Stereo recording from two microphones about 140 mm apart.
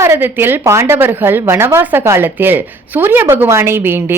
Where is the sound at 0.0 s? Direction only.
15° right (ahead or behind).